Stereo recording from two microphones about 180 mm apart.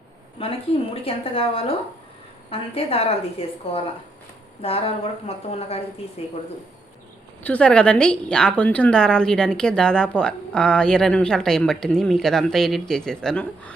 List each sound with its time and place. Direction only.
0.4 s a woman's voice: 30° left (ahead or behind)
7.4 s a woman's voice: 5° left (ahead or behind)